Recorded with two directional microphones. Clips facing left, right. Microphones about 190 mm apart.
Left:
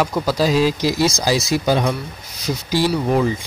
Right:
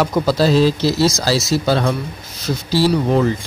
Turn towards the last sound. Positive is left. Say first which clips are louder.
# right 2 dB
turn(degrees=10)  # may be behind; listen again after turning